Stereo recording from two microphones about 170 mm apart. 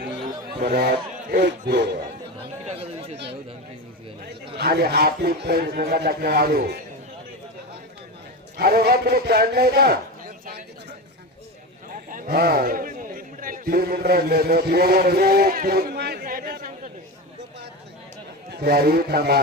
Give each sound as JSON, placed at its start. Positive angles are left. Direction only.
{"t": 0.6, "sound": "a man's voice", "side_deg": -70}
{"t": 2.6, "sound": "chatter", "side_deg": -40}
{"t": 4.5, "sound": "a man's voice", "side_deg": -65}
{"t": 8.5, "sound": "a man's voice", "side_deg": -65}
{"t": 12.1, "sound": "a man's voice", "side_deg": -60}
{"t": 18.5, "sound": "a man's voice", "side_deg": -70}